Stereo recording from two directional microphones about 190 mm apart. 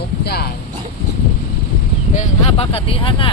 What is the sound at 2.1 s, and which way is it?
Speech, 35° left (ahead or behind).